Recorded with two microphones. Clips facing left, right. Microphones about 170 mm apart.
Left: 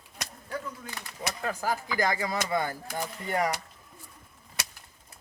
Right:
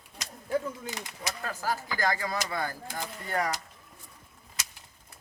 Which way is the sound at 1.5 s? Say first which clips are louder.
Left 2 dB; 15° left (ahead or behind).